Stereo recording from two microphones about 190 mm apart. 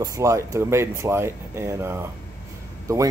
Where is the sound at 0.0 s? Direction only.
15° right (ahead or behind).